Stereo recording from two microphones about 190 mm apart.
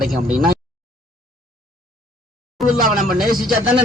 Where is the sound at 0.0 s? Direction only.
Centre (ahead or behind).